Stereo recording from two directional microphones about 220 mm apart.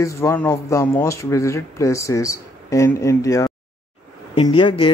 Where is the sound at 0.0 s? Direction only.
15° left (ahead or behind).